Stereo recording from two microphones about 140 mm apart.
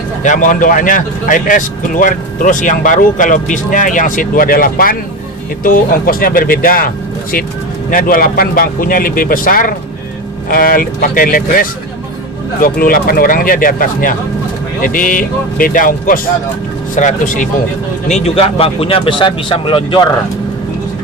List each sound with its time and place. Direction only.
0.2 s speech: 65° left (ahead or behind); by 16.2 s 85° left
16.9 s speech: 65° left (ahead or behind)
18.1 s speech: 50° left (ahead or behind); by 20.1 s 35° left (ahead or behind)